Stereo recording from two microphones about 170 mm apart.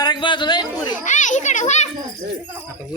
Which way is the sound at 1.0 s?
45° left (ahead or behind).